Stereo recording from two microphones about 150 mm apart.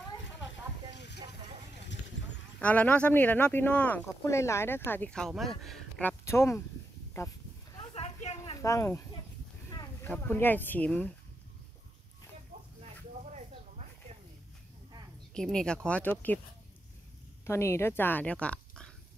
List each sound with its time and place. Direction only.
2.6 s speech: 10° left (ahead or behind)
6.0 s speech: 20° left (ahead or behind)
7.2 s livestock: 25° left (ahead or behind)
7.9 s a sound: 45° left (ahead or behind)
8.6 s speech: 20° left (ahead or behind); by 11.1 s 5° left (ahead or behind)
13.2 s a sound: 50° right (ahead or behind)
15.3 s speech: 5° left (ahead or behind)
17.5 s speech: 15° left (ahead or behind)